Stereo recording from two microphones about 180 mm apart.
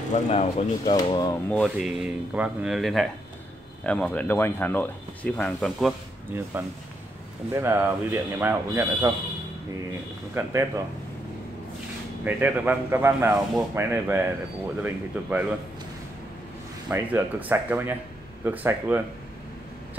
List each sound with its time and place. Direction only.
0.1 s speech: 35° left (ahead or behind)
0.9 s speech: 20° left (ahead or behind)
1.5 s speech: 5° left (ahead or behind)
2.0 s speech: 5° right (ahead or behind)
6.3 s a man's voice: 15° right (ahead or behind)
7.5 s a man's voice: 15° right (ahead or behind)
10.3 s a man's voice: 15° right (ahead or behind)
12.3 s a man's voice: 10° right (ahead or behind)
16.9 s a man's voice: 10° right (ahead or behind)